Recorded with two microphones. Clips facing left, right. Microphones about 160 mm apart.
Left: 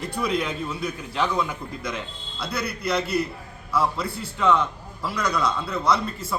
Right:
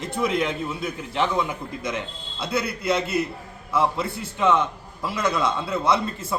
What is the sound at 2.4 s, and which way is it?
Speech, 25° right (ahead or behind).